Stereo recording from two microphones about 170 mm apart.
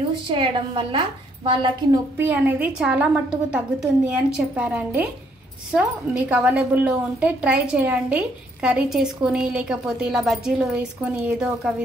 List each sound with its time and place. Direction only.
0.3 s a woman's voice: 30° right (ahead or behind)
2.1 s a woman's voice: 10° right (ahead or behind)